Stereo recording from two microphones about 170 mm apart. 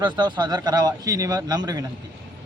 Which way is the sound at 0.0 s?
25° right (ahead or behind).